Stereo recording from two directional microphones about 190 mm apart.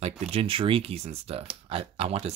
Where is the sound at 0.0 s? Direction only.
30° right (ahead or behind).